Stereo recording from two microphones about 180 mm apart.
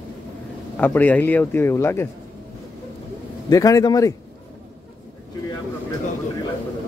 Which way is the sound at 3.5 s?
20° left (ahead or behind).